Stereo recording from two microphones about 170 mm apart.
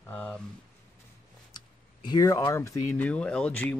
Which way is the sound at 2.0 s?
20° left (ahead or behind).